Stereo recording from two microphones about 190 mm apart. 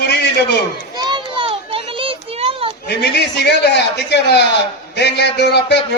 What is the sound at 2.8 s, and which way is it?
A man's voice, 60° left (ahead or behind).